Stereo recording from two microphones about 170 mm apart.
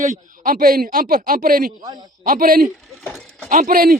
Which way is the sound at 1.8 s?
25° right (ahead or behind).